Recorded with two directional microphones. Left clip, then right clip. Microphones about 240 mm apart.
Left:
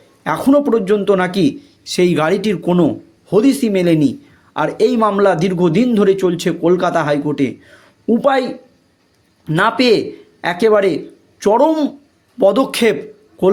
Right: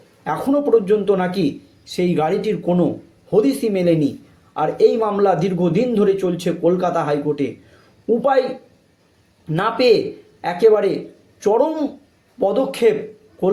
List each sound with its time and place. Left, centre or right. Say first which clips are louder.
0.3 s a man's voice: left 3 dB; left
9.5 s a man's voice: left 2 dB; left